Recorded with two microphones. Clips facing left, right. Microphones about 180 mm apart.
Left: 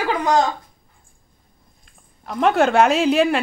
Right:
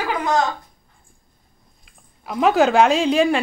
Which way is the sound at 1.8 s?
5° right (ahead or behind).